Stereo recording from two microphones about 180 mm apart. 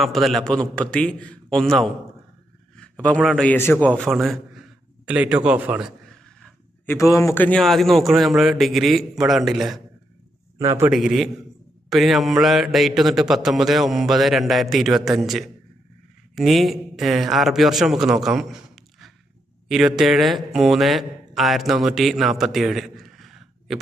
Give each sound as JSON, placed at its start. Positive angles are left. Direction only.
{"t": 0.0, "sound": "a man's voice", "side_deg": 0}
{"t": 3.2, "sound": "a man's voice", "side_deg": 0}
{"t": 6.1, "sound": "a sound", "side_deg": 5}
{"t": 6.9, "sound": "a man's voice", "side_deg": 15}
{"t": 10.6, "sound": "a man's voice", "side_deg": -15}
{"t": 10.9, "sound": "a man's voice", "side_deg": 0}